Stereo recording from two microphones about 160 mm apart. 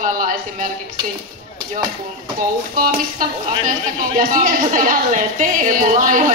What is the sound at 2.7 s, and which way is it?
A woman's voice, 60° right (ahead or behind).